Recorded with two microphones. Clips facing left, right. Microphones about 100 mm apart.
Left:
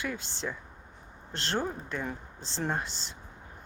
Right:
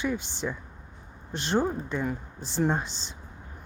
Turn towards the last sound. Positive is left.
turn(degrees=-20)  # may be behind; listen again after turning